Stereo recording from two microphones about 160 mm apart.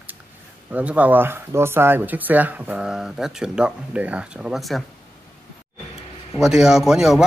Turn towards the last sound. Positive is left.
turn(degrees=0)  # may be behind; listen again after turning